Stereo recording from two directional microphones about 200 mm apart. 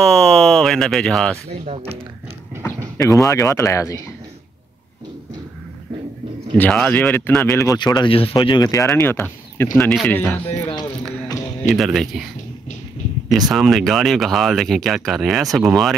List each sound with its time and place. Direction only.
0.0 s speech: centre (ahead or behind)
1.7 s speech: 30° right (ahead or behind)
3.0 s speech: 15° left (ahead or behind)
6.5 s speech: 5° left (ahead or behind)
8.8 s speech: 5° left (ahead or behind)
11.7 s speech: centre (ahead or behind)
13.5 s speech: centre (ahead or behind)